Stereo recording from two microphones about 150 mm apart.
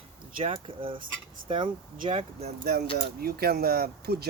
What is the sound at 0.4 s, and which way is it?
Speech, 40° right (ahead or behind).